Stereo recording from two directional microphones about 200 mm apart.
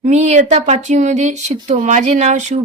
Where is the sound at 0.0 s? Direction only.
35° right (ahead or behind).